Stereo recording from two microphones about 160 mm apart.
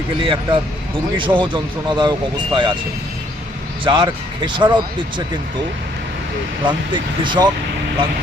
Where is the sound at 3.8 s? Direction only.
30° right (ahead or behind).